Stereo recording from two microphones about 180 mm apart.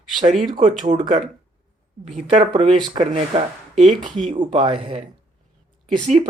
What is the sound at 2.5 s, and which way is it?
Speech, 30° right (ahead or behind).